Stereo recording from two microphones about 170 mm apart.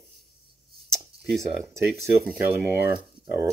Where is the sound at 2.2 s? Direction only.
15° right (ahead or behind).